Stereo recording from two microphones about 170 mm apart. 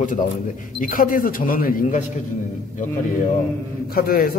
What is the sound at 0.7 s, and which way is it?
A man's voice, 55° left (ahead or behind).